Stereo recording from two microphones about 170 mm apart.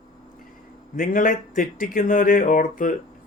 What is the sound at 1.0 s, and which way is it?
Speech, 50° left (ahead or behind).